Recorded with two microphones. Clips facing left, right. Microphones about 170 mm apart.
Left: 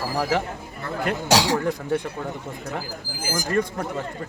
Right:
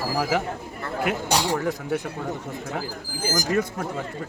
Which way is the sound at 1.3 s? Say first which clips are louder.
Left 6 dB; 90° left.